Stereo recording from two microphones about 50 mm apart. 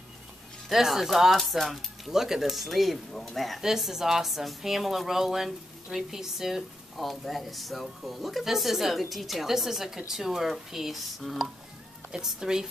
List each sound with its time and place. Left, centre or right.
0.7 s speech: centre
12.1 s speech: centre